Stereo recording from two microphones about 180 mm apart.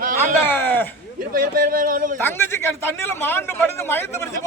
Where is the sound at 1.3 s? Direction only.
55° right (ahead or behind).